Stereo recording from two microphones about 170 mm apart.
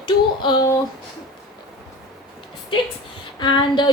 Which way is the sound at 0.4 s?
25° left (ahead or behind).